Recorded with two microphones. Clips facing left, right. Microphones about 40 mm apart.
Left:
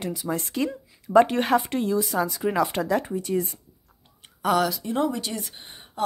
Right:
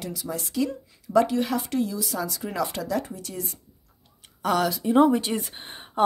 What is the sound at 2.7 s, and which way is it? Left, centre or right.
Speech, left.